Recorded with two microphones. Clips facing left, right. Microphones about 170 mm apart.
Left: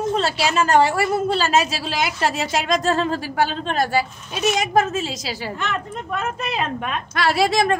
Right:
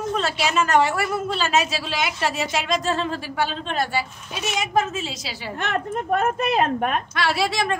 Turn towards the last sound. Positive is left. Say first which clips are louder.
# left 5 dB
turn(degrees=45)  # may be behind; listen again after turning